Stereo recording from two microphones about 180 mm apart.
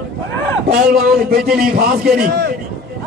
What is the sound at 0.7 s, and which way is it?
A man's voice, 60° right (ahead or behind).